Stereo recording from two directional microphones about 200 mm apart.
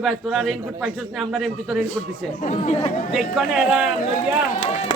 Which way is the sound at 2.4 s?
35° left (ahead or behind).